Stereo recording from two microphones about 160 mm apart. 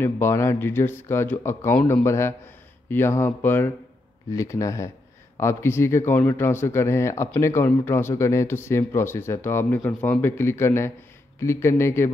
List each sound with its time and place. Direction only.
0.0 s speech: 15° left (ahead or behind)